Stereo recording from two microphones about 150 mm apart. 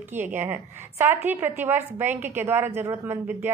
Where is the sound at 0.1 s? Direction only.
15° right (ahead or behind).